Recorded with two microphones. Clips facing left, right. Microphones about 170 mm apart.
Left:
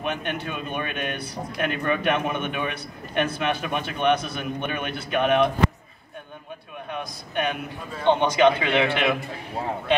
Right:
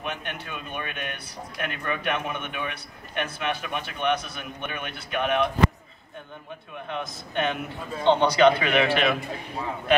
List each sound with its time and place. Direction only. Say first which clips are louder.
0.0 s a man's voice: left 6 dB; 25° left (ahead or behind)
6.9 s a man's voice: even; 15° left (ahead or behind)